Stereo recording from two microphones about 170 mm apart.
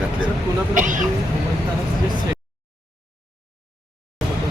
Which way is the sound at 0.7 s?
50° right (ahead or behind).